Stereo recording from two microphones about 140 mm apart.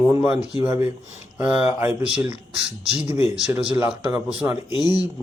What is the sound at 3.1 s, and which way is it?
Speech, 45° left (ahead or behind).